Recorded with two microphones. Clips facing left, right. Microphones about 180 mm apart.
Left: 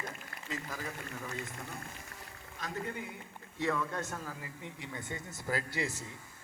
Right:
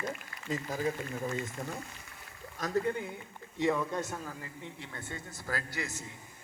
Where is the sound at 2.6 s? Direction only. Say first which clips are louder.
Right 5 dB; 45° right (ahead or behind).